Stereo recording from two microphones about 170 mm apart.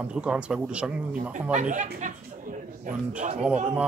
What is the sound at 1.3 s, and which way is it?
Speech, 45° right (ahead or behind).